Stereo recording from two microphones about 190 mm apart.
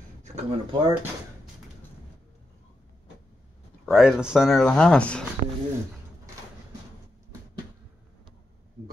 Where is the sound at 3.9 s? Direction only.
5° right (ahead or behind).